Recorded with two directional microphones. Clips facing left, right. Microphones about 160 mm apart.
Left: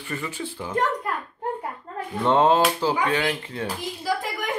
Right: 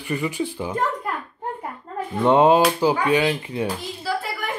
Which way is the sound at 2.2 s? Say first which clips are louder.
Right 3 dB; 15° right (ahead or behind).